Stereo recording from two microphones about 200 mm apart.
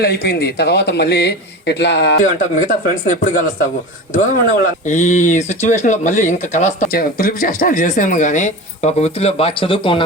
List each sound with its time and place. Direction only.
0.0 s speech: 55° left (ahead or behind)
2.6 s speech: 40° left (ahead or behind)